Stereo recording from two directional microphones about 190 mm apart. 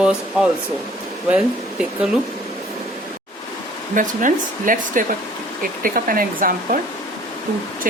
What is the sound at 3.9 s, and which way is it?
Speech, 45° right (ahead or behind).